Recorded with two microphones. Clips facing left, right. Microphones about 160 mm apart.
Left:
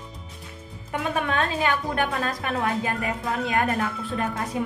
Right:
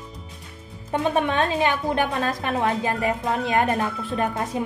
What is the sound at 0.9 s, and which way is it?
A woman's voice, 25° right (ahead or behind).